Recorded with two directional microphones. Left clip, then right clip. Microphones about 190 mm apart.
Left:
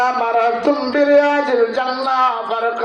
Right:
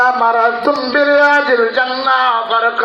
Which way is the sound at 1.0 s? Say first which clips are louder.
Right 3 dB; 15° right (ahead or behind).